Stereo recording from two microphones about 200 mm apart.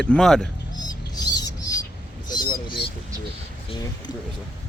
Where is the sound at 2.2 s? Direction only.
20° left (ahead or behind).